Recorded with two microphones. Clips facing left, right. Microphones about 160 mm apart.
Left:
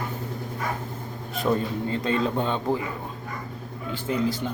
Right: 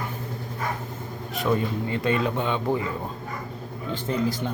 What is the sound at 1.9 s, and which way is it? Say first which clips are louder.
Speech: even; 30° left (ahead or behind).